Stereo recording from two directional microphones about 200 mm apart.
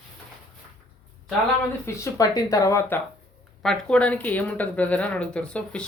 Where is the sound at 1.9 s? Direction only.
15° left (ahead or behind).